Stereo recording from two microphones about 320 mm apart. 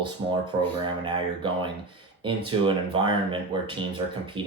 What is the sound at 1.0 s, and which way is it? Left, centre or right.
Speech, centre.